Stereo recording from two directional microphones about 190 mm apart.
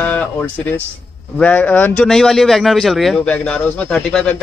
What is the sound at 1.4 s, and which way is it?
A man's voice, 10° left (ahead or behind).